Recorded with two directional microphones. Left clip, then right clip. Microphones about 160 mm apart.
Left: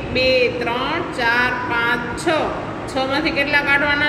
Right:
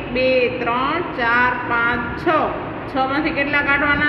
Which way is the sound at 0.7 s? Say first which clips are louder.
Right 1 dB; 40° right (ahead or behind).